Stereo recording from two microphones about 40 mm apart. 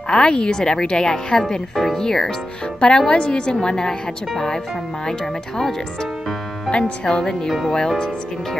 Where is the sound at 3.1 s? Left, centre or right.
Left; by 6.7 s centre.